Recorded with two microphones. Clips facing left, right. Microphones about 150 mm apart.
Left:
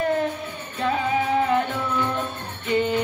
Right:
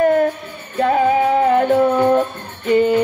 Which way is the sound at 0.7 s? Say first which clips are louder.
Right 8 dB; 50° right (ahead or behind).